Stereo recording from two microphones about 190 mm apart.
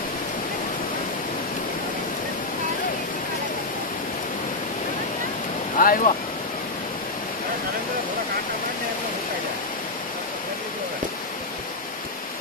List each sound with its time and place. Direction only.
5.8 s speech: 45° left (ahead or behind)